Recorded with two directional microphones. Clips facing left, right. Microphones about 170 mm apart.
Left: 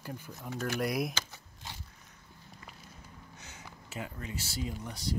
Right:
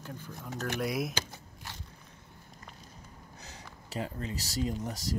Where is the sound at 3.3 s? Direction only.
35° right (ahead or behind).